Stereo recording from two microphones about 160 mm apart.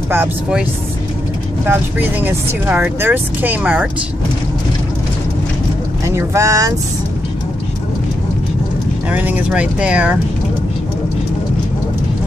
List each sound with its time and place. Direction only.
0.1 s speech: 10° right (ahead or behind)
1.7 s speech: 15° right (ahead or behind)
6.0 s speech: 20° right (ahead or behind)
9.1 s speech: 10° right (ahead or behind)